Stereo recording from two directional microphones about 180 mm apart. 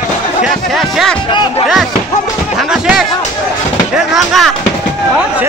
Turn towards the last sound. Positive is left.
turn(degrees=0)  # may be behind; listen again after turning